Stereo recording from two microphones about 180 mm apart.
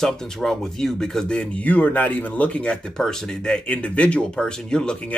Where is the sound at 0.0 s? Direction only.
5° left (ahead or behind).